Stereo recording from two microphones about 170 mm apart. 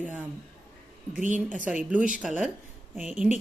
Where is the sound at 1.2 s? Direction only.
50° right (ahead or behind).